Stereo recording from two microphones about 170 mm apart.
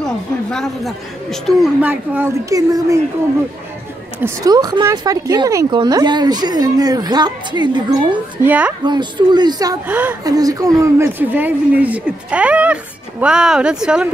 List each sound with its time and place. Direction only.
0.0 s a sound: 5° left (ahead or behind)
1.8 s speech: 10° right (ahead or behind)
4.2 s speech: 20° right (ahead or behind)
8.5 s speech: 10° right (ahead or behind)
8.8 s speech: 25° right (ahead or behind)
9.8 s speech: 10° right (ahead or behind)
10.2 s speech: 20° right (ahead or behind); by 14.0 s 5° right (ahead or behind)